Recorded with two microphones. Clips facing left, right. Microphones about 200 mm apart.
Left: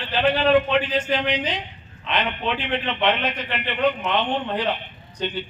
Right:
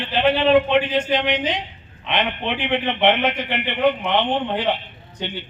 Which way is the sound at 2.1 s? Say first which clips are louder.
Right 2 dB; 60° right (ahead or behind).